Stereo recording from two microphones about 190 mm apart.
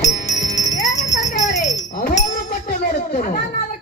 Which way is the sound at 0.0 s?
40° left (ahead or behind).